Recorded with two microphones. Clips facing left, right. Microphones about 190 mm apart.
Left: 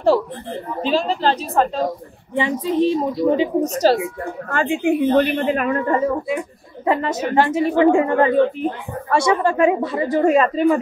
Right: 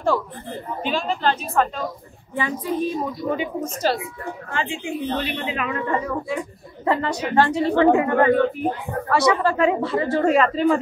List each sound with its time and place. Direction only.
0.0 s speech: 35° left (ahead or behind)
2.3 s speech: 25° left (ahead or behind); by 5.9 s 45° left (ahead or behind)
6.0 s a woman's voice: 20° left (ahead or behind)
7.8 s speech: 25° left (ahead or behind)